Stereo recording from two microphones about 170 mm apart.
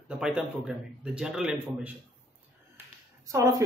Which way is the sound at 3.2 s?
20° right (ahead or behind).